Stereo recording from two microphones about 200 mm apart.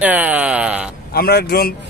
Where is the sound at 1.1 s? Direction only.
50° left (ahead or behind).